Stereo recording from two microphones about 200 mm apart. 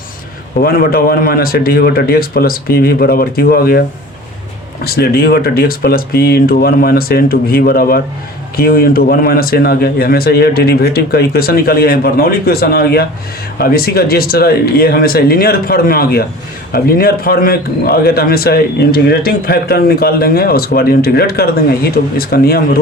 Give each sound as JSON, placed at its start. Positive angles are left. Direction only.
{"t": 0.6, "sound": "a man's voice", "side_deg": 50}